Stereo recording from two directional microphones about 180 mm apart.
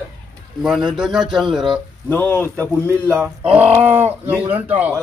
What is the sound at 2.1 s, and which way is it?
Speech, 10° left (ahead or behind).